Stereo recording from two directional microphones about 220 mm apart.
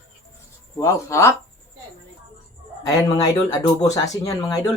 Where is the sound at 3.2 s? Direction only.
15° left (ahead or behind).